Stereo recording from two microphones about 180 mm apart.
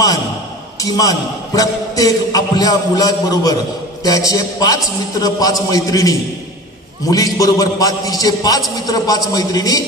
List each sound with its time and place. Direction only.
0.7 s a man's voice: 20° left (ahead or behind)